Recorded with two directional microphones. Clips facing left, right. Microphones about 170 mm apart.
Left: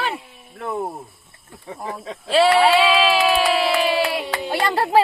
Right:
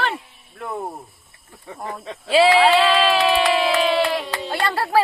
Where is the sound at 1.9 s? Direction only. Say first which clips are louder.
Right 1 dB; centre (ahead or behind).